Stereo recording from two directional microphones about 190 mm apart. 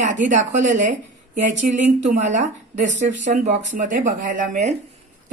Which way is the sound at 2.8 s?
70° right (ahead or behind).